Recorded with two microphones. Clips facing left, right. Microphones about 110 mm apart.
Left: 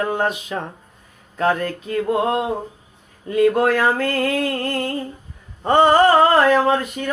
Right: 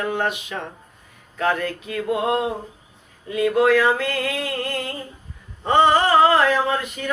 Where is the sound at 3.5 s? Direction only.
45° left (ahead or behind).